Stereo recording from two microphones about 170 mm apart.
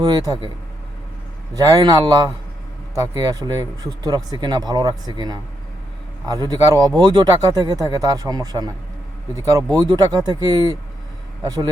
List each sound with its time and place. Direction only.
0.0 s speech: 20° right (ahead or behind)
1.5 s speech: 20° right (ahead or behind)